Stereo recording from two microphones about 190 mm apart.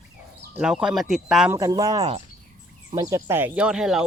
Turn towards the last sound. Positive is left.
turn(degrees=-5)  # may be behind; listen again after turning